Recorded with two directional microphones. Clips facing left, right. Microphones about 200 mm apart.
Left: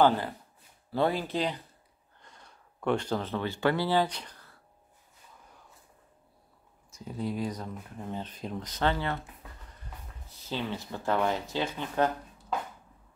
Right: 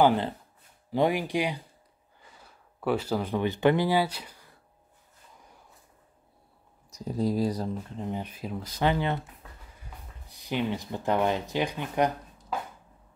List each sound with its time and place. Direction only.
0.0 s speech: 15° right (ahead or behind)
6.9 s speech: 40° right (ahead or behind)
8.0 s speech: 15° right (ahead or behind)